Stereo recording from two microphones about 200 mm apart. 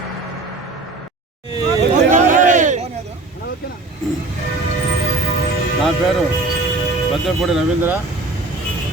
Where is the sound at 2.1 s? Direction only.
40° right (ahead or behind).